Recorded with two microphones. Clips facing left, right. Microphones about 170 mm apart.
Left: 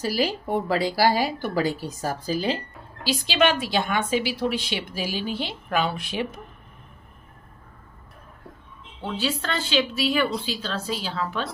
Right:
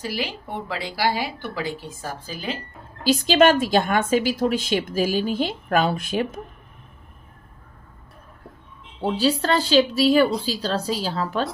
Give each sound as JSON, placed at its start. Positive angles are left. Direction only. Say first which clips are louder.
{"t": 0.0, "sound": "a woman's voice", "louder": "left 4 dB", "side_deg": 40}
{"t": 3.0, "sound": "a woman's voice", "louder": "right 6 dB", "side_deg": -45}
{"t": 9.0, "sound": "a woman's voice", "louder": "right 7 dB", "side_deg": -35}